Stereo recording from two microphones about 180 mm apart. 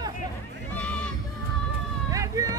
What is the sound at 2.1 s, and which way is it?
Vehicle, 20° right (ahead or behind).